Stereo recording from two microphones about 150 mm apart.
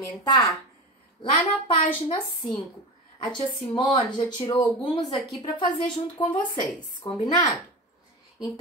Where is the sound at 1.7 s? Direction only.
35° left (ahead or behind).